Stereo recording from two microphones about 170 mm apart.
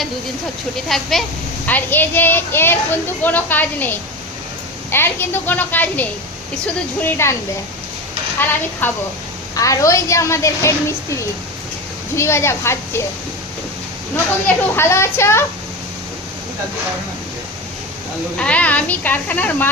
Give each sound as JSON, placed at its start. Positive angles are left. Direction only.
{"t": 0.9, "sound": "a woman's voice", "side_deg": 0}
{"t": 8.8, "sound": "a woman's voice", "side_deg": 10}
{"t": 14.4, "sound": "a woman's voice", "side_deg": 15}
{"t": 18.3, "sound": "a woman's voice", "side_deg": 5}